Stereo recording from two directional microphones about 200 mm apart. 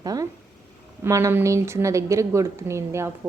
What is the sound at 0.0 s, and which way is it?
A woman's voice, 20° right (ahead or behind).